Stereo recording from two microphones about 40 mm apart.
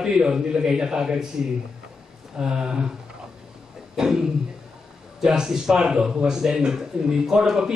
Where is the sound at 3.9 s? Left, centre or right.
Centre.